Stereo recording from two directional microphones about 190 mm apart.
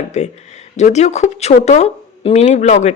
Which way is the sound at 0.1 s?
35° left (ahead or behind).